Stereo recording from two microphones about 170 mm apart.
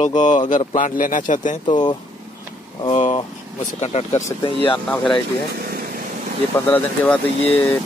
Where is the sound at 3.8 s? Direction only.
40° left (ahead or behind).